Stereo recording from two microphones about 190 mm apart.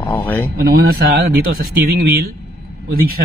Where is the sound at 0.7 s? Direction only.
50° right (ahead or behind).